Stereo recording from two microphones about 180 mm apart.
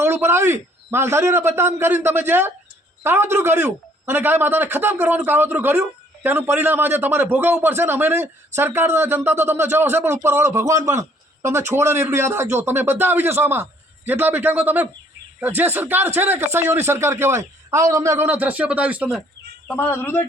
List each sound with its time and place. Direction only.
0.0 s a man's voice: 15° right (ahead or behind)
19.6 s speech: 10° left (ahead or behind)